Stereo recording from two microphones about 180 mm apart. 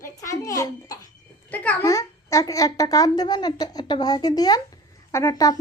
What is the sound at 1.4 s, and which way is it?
A child's voice, 10° left (ahead or behind).